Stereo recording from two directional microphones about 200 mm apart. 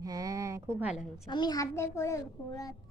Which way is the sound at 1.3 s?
20° left (ahead or behind).